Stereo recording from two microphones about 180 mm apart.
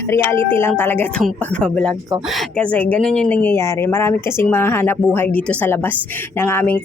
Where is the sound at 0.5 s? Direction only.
10° left (ahead or behind).